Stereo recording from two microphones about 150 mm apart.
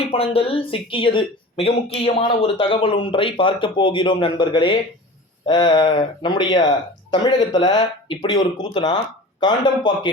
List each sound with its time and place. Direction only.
0.1 s speech: 40° left (ahead or behind)